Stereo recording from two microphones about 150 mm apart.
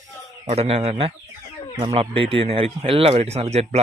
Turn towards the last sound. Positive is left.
turn(degrees=-45)  # may be behind; listen again after turning